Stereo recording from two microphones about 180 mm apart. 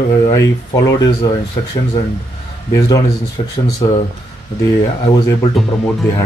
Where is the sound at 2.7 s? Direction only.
20° left (ahead or behind).